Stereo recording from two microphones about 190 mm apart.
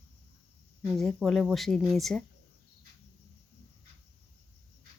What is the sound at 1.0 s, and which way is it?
Speech, centre (ahead or behind).